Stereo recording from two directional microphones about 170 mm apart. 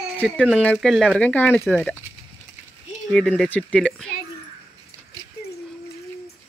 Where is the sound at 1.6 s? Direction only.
5° right (ahead or behind).